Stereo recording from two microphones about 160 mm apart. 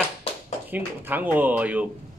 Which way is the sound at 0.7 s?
10° right (ahead or behind).